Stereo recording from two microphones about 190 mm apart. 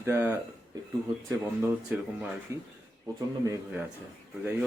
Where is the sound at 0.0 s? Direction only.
10° right (ahead or behind).